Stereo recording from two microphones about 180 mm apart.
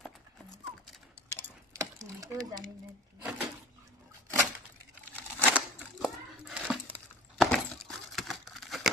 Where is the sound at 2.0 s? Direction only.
20° right (ahead or behind).